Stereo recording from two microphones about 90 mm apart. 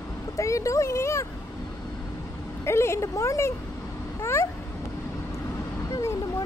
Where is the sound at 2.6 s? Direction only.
30° left (ahead or behind).